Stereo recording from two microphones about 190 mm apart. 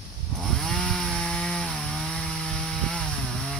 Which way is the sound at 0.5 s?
5° left (ahead or behind).